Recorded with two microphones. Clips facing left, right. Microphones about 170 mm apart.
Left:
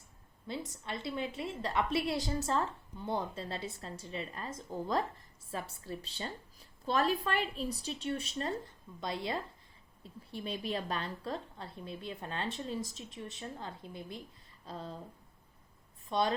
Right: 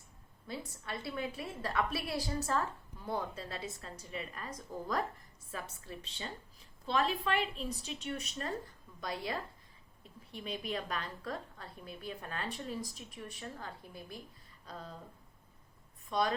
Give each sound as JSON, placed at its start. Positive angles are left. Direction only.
{"t": 0.4, "sound": "a woman's voice", "side_deg": 25}
{"t": 16.0, "sound": "speech", "side_deg": 30}